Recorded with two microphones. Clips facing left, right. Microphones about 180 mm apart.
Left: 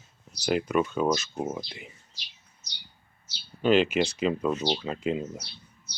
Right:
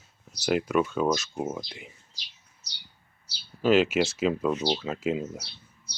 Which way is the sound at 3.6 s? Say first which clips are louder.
Right 1 dB; centre (ahead or behind).